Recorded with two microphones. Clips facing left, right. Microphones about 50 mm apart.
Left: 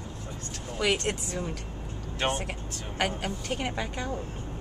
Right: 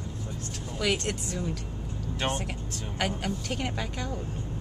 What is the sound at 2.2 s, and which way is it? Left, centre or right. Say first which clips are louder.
A woman's voice: left 2 dB; left.